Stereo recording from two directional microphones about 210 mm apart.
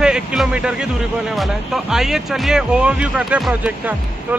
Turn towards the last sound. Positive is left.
turn(degrees=-5)  # may be behind; listen again after turning